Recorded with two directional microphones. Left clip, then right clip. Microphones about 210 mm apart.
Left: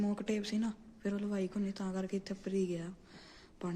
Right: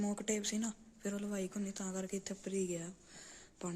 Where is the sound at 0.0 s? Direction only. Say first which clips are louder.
Left 1 dB; 15° right (ahead or behind).